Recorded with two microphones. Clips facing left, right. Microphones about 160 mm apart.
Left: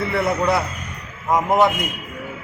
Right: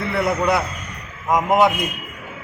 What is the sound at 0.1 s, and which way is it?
A man's voice, centre (ahead or behind).